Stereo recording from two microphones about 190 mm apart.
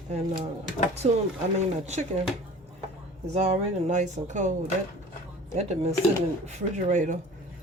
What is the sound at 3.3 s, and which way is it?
Speech, 35° right (ahead or behind).